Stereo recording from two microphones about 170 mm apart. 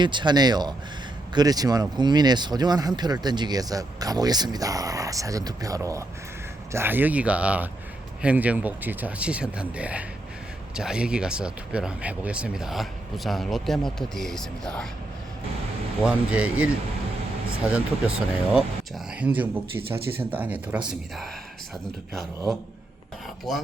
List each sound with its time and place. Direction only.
0.0 s speech: 25° right (ahead or behind); by 14.8 s 5° left (ahead or behind)
16.0 s speech: 5° right (ahead or behind)
19.4 s speech: 10° right (ahead or behind)
22.1 s speech: centre (ahead or behind)